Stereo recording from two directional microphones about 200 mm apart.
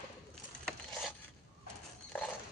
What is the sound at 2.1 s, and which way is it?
Horse, 10° left (ahead or behind).